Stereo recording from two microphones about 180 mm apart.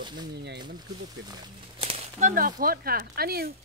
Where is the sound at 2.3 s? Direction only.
50° right (ahead or behind).